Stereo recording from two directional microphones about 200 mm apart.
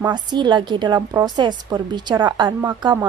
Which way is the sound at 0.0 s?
20° right (ahead or behind).